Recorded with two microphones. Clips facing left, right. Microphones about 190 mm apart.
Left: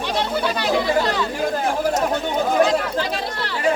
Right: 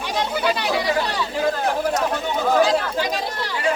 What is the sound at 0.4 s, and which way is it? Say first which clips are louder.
Speech: even; 10° right (ahead or behind).